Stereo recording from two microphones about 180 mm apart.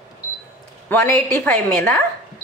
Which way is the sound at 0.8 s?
10° left (ahead or behind).